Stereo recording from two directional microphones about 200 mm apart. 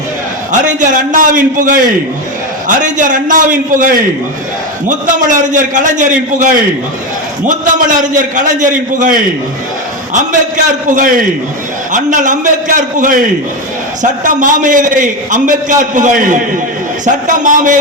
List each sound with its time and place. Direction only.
0.6 s a man's voice: 40° right (ahead or behind)
10.8 s a man's voice: 40° right (ahead or behind)